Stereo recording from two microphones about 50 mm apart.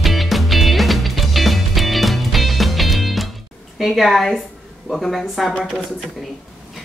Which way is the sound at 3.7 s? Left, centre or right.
Centre.